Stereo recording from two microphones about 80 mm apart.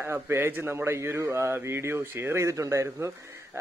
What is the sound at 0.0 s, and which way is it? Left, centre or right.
A man's voice, right.